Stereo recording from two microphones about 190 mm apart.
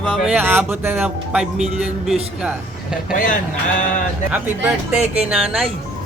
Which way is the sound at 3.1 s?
45° left (ahead or behind).